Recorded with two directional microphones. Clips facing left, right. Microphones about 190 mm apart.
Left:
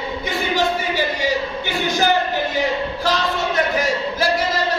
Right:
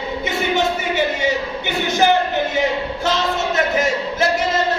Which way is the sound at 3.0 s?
25° right (ahead or behind).